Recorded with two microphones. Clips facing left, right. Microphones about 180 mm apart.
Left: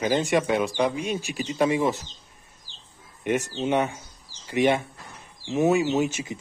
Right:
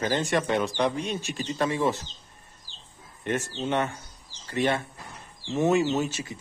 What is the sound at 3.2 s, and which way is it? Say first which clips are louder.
A man's voice: left 4 dB; 10° left (ahead or behind).